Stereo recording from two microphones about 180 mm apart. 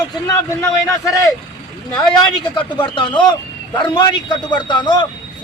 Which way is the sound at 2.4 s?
25° left (ahead or behind).